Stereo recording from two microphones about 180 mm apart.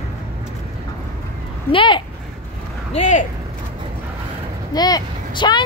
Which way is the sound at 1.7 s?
30° left (ahead or behind).